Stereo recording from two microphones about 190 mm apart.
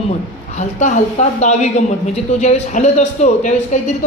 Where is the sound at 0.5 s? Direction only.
40° left (ahead or behind).